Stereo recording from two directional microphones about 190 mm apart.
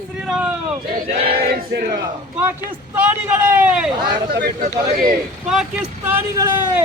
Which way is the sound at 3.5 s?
10° right (ahead or behind).